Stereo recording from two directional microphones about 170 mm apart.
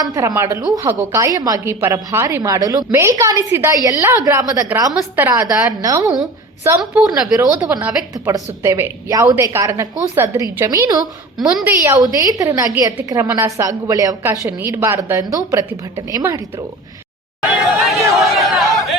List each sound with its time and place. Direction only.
0.0 s a woman's voice: 20° right (ahead or behind)
6.7 s a woman's voice: 10° right (ahead or behind)
11.3 s a woman's voice: 5° right (ahead or behind); by 16.6 s 20° right (ahead or behind)
17.5 s a sound: centre (ahead or behind)